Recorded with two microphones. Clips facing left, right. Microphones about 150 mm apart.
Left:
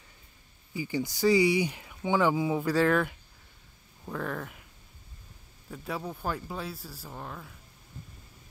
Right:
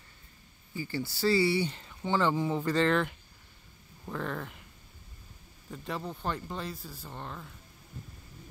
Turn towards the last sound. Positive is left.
turn(degrees=0)  # may be behind; listen again after turning